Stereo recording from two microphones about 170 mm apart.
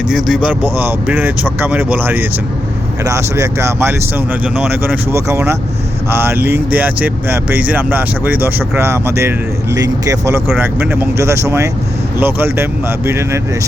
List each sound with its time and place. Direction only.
0.3 s speech: 5° right (ahead or behind)